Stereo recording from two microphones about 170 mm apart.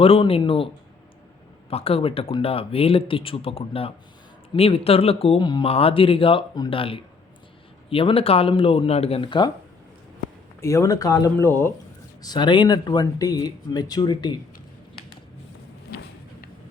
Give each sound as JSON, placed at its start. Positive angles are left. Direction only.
{"t": 0.0, "sound": "speech", "side_deg": 35}
{"t": 1.7, "sound": "speech", "side_deg": 35}
{"t": 10.6, "sound": "speech", "side_deg": 15}
{"t": 12.2, "sound": "speech", "side_deg": 25}